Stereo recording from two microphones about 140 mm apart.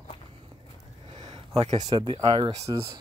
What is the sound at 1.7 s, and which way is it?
Speech, 30° right (ahead or behind).